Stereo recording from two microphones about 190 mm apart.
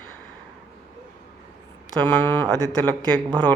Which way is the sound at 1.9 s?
10° left (ahead or behind).